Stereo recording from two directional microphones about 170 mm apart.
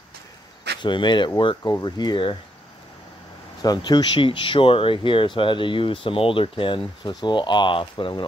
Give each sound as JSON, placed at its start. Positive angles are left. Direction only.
{"t": 0.8, "sound": "speech", "side_deg": 25}
{"t": 3.6, "sound": "speech", "side_deg": 25}